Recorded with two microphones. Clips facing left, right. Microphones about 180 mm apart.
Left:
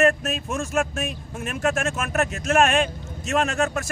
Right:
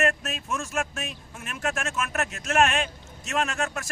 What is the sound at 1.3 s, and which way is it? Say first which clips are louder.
Speech: left 6 dB; 35° left (ahead or behind).